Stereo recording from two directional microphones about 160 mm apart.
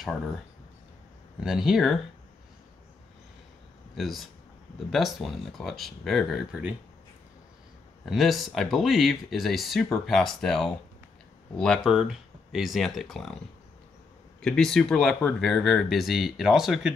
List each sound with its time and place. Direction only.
1.4 s speech: 5° right (ahead or behind)
3.9 s speech: centre (ahead or behind)
8.0 s speech: centre (ahead or behind)
14.4 s speech: 5° left (ahead or behind)